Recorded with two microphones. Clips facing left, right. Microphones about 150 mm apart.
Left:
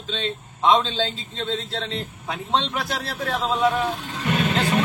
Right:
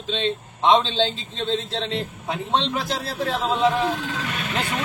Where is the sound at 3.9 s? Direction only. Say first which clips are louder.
Right 4 dB; 90° right.